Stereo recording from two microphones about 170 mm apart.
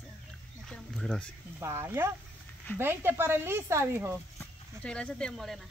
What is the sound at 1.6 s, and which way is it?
Speech, 15° right (ahead or behind).